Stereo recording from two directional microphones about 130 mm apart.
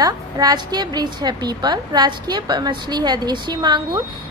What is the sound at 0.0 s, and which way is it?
A woman's voice, 30° right (ahead or behind).